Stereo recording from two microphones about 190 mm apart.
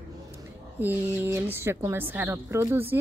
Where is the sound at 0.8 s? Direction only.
10° right (ahead or behind).